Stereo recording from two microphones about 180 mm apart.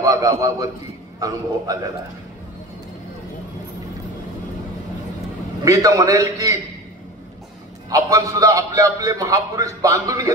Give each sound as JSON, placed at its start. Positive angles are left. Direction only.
{"t": 0.0, "sound": "a man's voice", "side_deg": -20}
{"t": 1.7, "sound": "a man's voice", "side_deg": -20}
{"t": 5.7, "sound": "a man's voice", "side_deg": -20}
{"t": 7.9, "sound": "a man's voice", "side_deg": -20}